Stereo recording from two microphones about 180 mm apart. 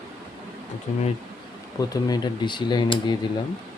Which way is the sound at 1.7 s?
20° left (ahead or behind).